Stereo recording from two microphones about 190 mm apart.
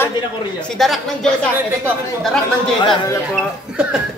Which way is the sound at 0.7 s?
Centre (ahead or behind).